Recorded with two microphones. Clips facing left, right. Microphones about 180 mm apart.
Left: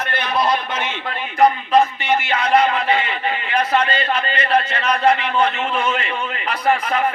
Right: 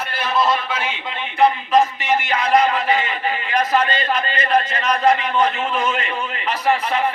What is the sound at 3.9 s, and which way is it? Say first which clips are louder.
A man's voice: even; 30° left (ahead or behind).